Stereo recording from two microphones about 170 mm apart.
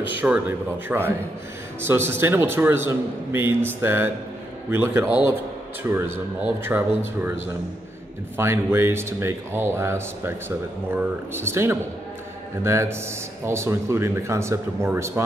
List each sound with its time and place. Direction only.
0.2 s speech: 10° right (ahead or behind)
8.4 s speech: 15° right (ahead or behind)